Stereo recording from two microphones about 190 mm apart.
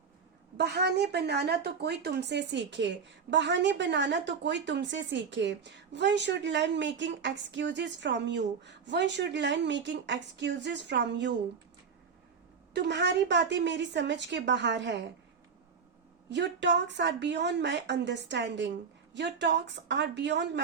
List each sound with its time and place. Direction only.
0.5 s a woman's voice: 60° right (ahead or behind)
12.7 s a woman's voice: 65° right (ahead or behind)
16.3 s a woman's voice: 65° right (ahead or behind)